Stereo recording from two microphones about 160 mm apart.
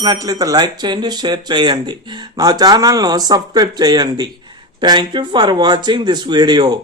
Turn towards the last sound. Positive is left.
turn(degrees=-25)  # may be behind; listen again after turning